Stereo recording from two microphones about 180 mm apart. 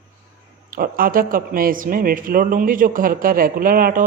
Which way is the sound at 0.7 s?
50° right (ahead or behind).